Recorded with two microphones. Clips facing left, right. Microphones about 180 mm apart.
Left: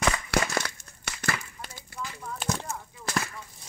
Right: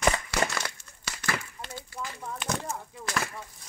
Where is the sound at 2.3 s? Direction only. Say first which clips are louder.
Left 1 dB; 35° left (ahead or behind).